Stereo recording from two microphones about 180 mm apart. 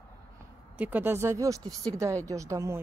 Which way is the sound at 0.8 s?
10° right (ahead or behind).